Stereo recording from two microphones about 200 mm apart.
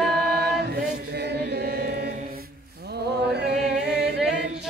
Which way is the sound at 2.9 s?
55° right (ahead or behind).